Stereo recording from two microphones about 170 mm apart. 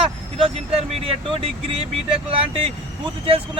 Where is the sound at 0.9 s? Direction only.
35° right (ahead or behind).